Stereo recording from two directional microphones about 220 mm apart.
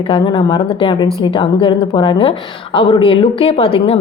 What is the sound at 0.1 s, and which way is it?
A woman's voice, 20° left (ahead or behind).